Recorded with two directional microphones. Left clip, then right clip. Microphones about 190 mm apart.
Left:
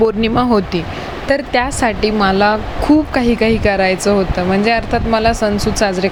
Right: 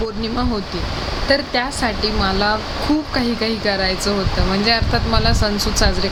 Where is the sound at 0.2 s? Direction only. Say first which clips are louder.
Left 8 dB; 35° left (ahead or behind).